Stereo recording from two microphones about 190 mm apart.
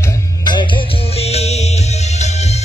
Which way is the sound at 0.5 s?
25° left (ahead or behind).